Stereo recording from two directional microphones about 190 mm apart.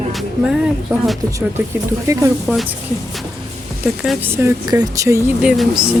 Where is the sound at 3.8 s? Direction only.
5° right (ahead or behind).